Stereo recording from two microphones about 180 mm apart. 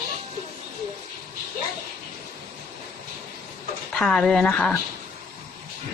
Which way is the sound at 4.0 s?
Centre (ahead or behind).